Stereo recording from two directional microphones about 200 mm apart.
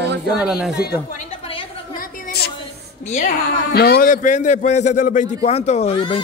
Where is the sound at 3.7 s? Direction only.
50° left (ahead or behind).